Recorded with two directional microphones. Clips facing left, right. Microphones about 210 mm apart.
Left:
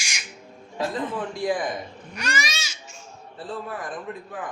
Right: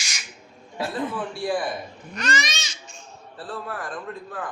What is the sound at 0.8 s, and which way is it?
Speech, 10° right (ahead or behind).